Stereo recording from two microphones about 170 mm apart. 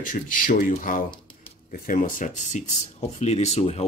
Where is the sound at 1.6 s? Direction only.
55° left (ahead or behind); by 3.8 s 40° left (ahead or behind).